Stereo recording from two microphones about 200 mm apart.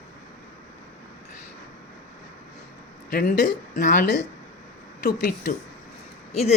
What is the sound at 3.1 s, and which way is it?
Speech, 50° left (ahead or behind).